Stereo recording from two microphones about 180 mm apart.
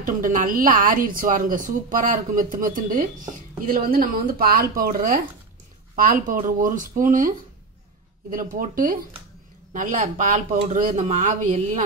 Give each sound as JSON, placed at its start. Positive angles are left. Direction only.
{"t": 0.0, "sound": "a woman's voice", "side_deg": -50}